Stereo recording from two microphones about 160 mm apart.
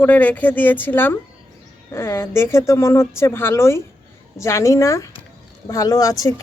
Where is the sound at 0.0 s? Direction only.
10° left (ahead or behind).